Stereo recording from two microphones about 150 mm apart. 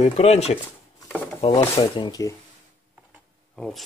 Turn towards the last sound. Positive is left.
turn(degrees=5)  # may be behind; listen again after turning